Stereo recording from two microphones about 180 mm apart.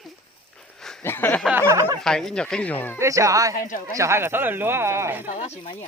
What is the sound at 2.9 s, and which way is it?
Speech, 15° right (ahead or behind).